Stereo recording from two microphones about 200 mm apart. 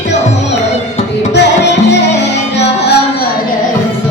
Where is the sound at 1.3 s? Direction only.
60° left (ahead or behind).